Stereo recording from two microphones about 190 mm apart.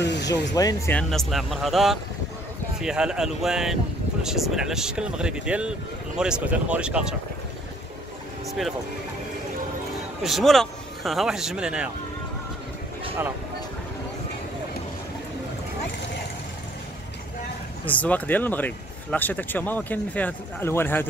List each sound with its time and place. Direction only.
0.0 s speech: 65° left (ahead or behind)
0.6 s speech: 20° left (ahead or behind)
0.9 s speech: centre (ahead or behind)
8.5 s speech: centre (ahead or behind)
10.2 s speech: centre (ahead or behind)
17.8 s speech: 10° left (ahead or behind)